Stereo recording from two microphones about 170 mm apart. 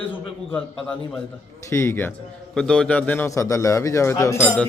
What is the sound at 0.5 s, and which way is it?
A man's voice, 5° left (ahead or behind).